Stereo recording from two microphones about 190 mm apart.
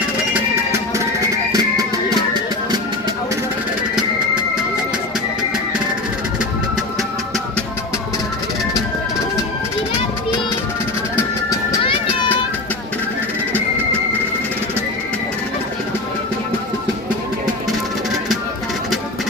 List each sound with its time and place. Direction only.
0.3 s music: 15° right (ahead or behind)